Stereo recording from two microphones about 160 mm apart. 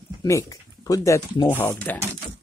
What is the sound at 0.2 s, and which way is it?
Speech, 20° left (ahead or behind).